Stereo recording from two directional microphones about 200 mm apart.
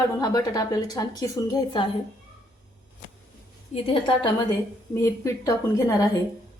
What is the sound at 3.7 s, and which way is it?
Speech, 35° left (ahead or behind).